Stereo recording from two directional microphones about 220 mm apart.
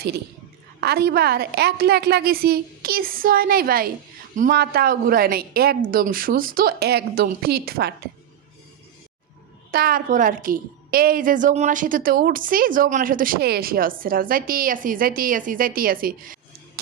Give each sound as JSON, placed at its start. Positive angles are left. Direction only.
{"t": 0.8, "sound": "a woman's voice", "side_deg": -45}
{"t": 9.7, "sound": "a woman's voice", "side_deg": -40}